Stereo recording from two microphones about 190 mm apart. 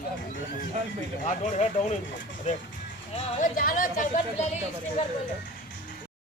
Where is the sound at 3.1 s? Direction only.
40° left (ahead or behind).